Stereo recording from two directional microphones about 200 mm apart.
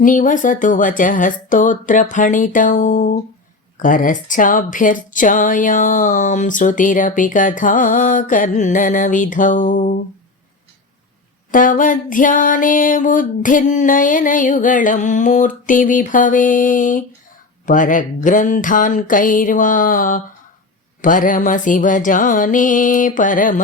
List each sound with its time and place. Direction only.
0.0 s speech: 40° left (ahead or behind)
11.5 s speech: 40° left (ahead or behind)